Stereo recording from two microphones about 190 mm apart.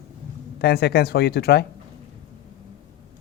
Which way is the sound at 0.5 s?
60° left (ahead or behind).